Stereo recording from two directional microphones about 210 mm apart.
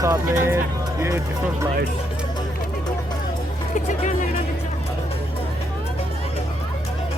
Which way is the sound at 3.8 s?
35° left (ahead or behind).